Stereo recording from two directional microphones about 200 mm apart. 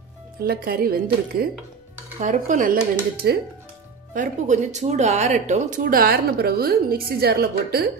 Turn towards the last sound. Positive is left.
turn(degrees=-50)  # may be behind; listen again after turning